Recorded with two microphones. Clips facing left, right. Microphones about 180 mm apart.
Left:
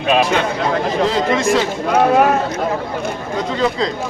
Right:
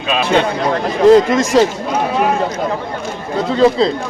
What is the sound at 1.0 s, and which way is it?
Speech, 45° right (ahead or behind).